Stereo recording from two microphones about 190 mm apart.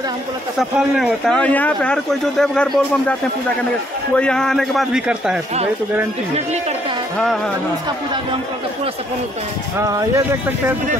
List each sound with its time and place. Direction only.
0.6 s speech: centre (ahead or behind)
9.8 s speech: 15° right (ahead or behind)